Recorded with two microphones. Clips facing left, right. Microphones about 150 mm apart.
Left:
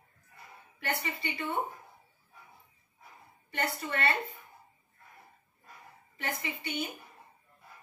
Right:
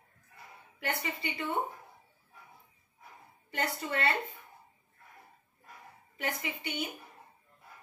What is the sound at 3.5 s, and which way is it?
Speech, 10° right (ahead or behind).